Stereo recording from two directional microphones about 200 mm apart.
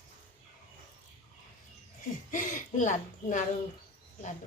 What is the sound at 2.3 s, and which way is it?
Speech, 40° left (ahead or behind).